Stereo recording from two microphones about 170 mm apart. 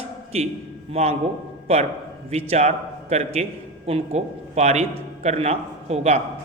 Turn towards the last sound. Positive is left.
turn(degrees=-40)  # may be behind; listen again after turning